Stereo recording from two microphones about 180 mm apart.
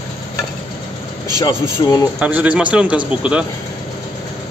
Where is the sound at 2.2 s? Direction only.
10° right (ahead or behind).